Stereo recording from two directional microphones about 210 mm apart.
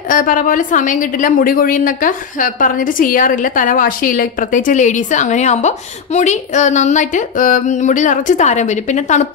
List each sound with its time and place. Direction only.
0.1 s a woman's voice: 40° left (ahead or behind)